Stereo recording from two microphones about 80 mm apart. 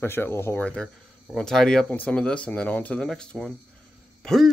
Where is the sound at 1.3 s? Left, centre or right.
Centre.